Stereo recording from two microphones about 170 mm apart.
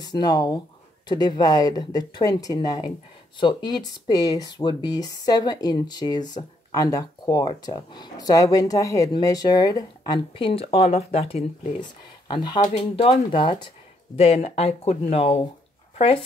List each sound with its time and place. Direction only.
0.0 s speech: 25° left (ahead or behind)
12.6 s speech: 35° left (ahead or behind)